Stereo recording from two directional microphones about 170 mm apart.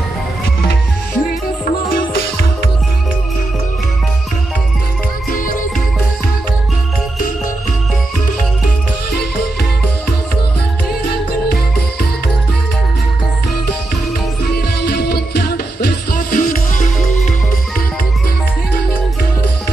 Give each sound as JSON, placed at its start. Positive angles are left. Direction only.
{"t": 5.3, "sound": "music", "side_deg": 55}
{"t": 14.5, "sound": "music", "side_deg": 70}